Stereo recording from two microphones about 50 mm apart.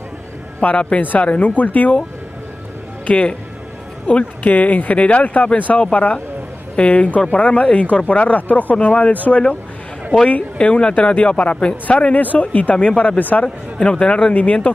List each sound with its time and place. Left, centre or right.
0.6 s speech: left
3.1 s speech: left
13.2 s speech: left
13.7 s speech: centre
14.3 s speech: left